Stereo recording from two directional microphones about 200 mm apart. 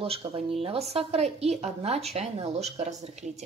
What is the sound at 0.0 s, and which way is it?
Speech, 25° right (ahead or behind).